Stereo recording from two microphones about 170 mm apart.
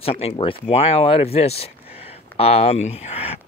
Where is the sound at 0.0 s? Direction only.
35° left (ahead or behind).